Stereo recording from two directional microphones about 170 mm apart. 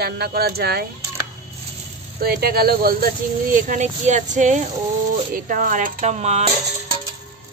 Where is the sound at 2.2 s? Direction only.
65° right (ahead or behind); by 6.5 s 40° right (ahead or behind).